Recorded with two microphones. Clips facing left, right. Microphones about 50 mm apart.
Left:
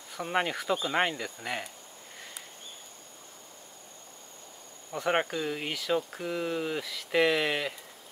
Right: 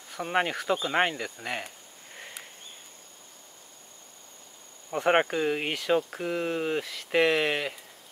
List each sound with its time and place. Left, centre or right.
0.1 s speech: centre
4.9 s speech: right